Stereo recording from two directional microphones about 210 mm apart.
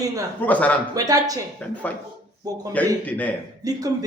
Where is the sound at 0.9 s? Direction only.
15° right (ahead or behind).